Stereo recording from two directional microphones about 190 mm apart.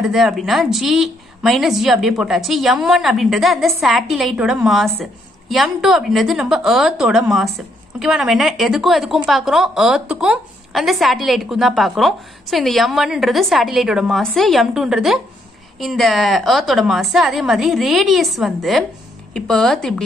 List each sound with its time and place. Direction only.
0.1 s a woman's voice: centre (ahead or behind)